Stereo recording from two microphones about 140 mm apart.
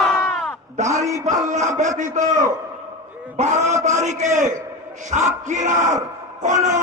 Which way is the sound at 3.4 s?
50° right (ahead or behind).